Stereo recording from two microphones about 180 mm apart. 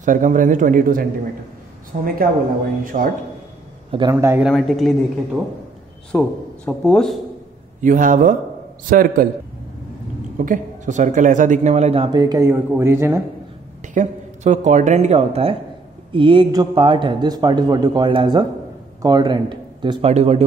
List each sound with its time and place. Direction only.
0.0 s a man's voice: 45° right (ahead or behind)
4.1 s speech: 15° right (ahead or behind)
4.5 s a man's voice: centre (ahead or behind)
7.8 s a man's voice: 45° right (ahead or behind)
10.3 s speech: 45° right (ahead or behind); by 13.2 s 15° right (ahead or behind)
13.9 s a man's voice: 40° right (ahead or behind)